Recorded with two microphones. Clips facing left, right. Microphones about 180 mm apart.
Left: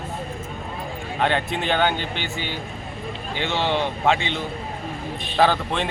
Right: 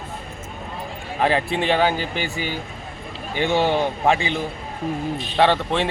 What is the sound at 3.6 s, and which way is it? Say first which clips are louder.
Speech: even; 40° right (ahead or behind).